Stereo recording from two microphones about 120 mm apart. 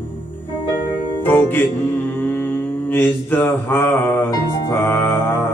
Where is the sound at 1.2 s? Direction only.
15° left (ahead or behind).